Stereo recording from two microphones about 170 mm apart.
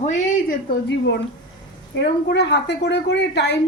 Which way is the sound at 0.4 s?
80° left.